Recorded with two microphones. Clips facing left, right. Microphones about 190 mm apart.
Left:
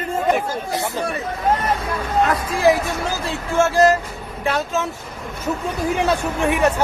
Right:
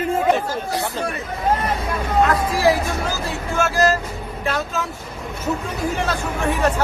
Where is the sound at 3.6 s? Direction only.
25° left (ahead or behind).